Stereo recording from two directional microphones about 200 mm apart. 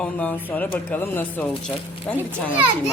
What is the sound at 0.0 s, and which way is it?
Speech, 5° left (ahead or behind).